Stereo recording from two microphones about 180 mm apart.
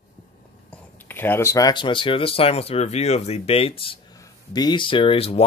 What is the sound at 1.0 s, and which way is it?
Speech, 10° left (ahead or behind).